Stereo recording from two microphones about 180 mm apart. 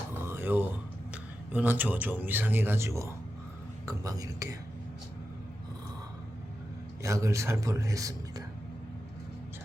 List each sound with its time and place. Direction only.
0.1 s a sound: 10° right (ahead or behind)
1.5 s speech: 10° right (ahead or behind)
7.0 s speech: 15° right (ahead or behind)